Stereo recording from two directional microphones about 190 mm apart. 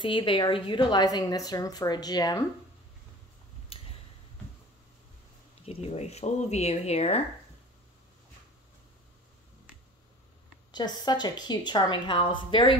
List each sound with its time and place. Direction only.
0.0 s speech: 25° left (ahead or behind)
3.7 s a sound: 30° left (ahead or behind)
5.7 s speech: 35° left (ahead or behind)
10.7 s speech: 20° left (ahead or behind)